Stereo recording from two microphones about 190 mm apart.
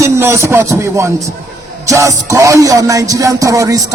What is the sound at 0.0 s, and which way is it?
Speech, 15° right (ahead or behind).